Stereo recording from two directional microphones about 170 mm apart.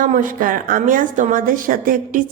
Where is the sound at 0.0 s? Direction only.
50° right (ahead or behind).